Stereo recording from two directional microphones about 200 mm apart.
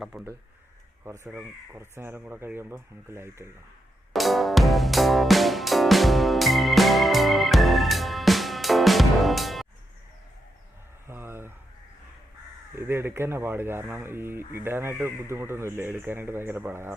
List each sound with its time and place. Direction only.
0.0 s speech: 5° right (ahead or behind)
4.1 s music: centre (ahead or behind)
11.0 s a sound: 10° right (ahead or behind)
12.7 s speech: 10° right (ahead or behind)